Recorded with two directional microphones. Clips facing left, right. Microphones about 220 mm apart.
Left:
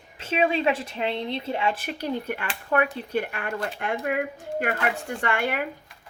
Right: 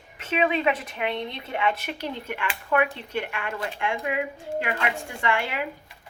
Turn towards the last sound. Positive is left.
turn(degrees=45)  # may be behind; listen again after turning